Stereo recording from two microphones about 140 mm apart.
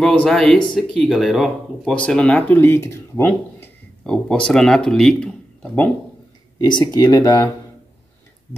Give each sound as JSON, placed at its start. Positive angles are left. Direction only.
{"t": 0.0, "sound": "speech", "side_deg": 5}
{"t": 6.6, "sound": "speech", "side_deg": 30}